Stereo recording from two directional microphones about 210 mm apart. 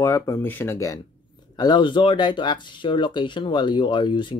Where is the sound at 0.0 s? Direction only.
15° left (ahead or behind).